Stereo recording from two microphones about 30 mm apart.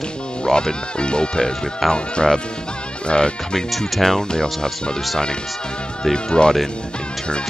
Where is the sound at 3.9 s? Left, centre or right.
Centre.